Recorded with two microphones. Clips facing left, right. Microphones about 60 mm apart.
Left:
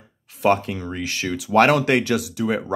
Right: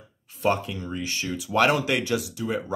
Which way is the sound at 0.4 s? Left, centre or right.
Left.